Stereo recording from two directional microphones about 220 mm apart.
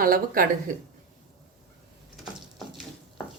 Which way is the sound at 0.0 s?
40° right (ahead or behind).